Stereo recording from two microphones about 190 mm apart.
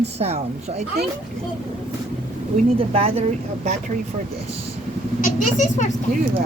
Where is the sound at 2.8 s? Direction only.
30° right (ahead or behind).